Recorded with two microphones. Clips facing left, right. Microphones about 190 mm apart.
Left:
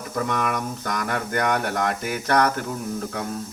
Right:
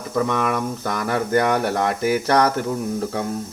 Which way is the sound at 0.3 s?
25° right (ahead or behind).